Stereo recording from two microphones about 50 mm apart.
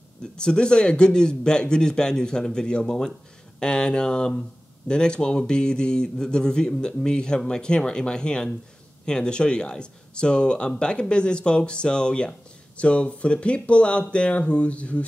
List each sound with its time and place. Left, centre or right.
0.4 s speech: centre